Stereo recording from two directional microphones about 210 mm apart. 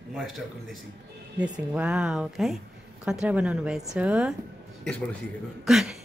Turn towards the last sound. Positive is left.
turn(degrees=0)  # may be behind; listen again after turning